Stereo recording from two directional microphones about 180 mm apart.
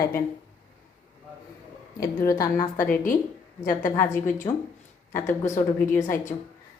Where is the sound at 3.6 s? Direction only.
45° left (ahead or behind).